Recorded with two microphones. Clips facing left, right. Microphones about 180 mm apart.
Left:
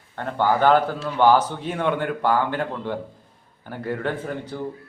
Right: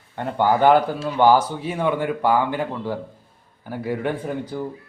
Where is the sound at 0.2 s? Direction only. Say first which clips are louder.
Right 2 dB; 15° right (ahead or behind).